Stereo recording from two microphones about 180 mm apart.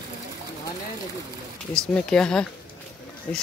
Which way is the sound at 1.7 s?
5° left (ahead or behind).